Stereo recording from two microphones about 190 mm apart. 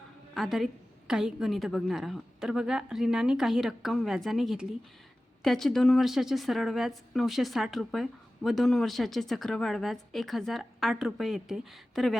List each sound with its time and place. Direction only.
0.3 s a woman's voice: centre (ahead or behind)